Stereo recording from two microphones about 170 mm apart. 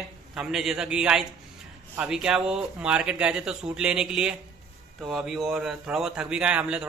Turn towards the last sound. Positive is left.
turn(degrees=-5)  # may be behind; listen again after turning